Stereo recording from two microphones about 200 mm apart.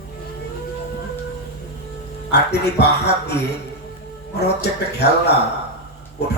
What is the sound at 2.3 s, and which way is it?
Speech, 55° left (ahead or behind).